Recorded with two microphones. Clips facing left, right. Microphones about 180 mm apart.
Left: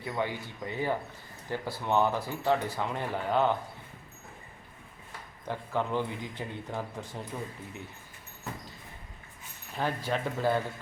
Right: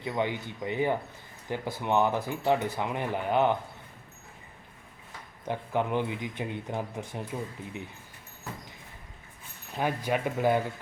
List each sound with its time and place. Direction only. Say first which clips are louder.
0.0 s speech: right 3 dB; 20° right (ahead or behind)
5.5 s speech: right 2 dB; 15° right (ahead or behind)
9.7 s speech: right 2 dB; 15° right (ahead or behind)